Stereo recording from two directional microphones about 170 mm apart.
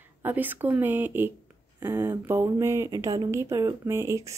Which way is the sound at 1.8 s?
15° right (ahead or behind).